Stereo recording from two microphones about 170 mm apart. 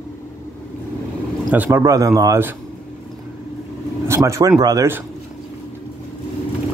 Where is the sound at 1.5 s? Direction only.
10° right (ahead or behind).